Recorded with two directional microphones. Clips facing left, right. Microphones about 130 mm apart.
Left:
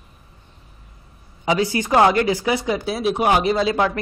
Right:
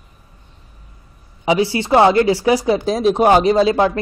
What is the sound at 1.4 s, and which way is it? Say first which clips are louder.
Speech: right 3 dB; 25° right (ahead or behind).